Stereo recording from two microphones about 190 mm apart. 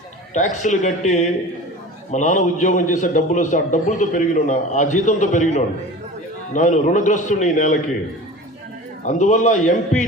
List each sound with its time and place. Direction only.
0.3 s a man's voice: 40° left (ahead or behind)
9.0 s a man's voice: 40° left (ahead or behind)